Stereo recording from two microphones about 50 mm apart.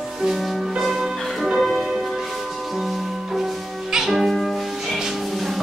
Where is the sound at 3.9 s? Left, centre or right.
Centre.